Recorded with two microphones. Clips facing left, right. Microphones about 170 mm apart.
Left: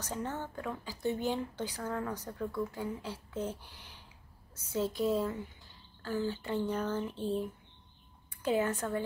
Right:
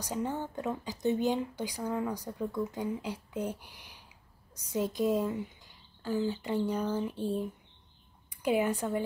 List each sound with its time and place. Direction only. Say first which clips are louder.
0.0 s a woman's voice: right 4 dB; 15° right (ahead or behind)